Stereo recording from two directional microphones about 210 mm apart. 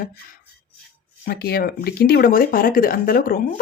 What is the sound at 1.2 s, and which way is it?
Speech, 45° left (ahead or behind).